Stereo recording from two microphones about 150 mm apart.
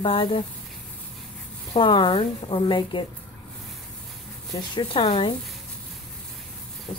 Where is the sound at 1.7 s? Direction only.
35° left (ahead or behind).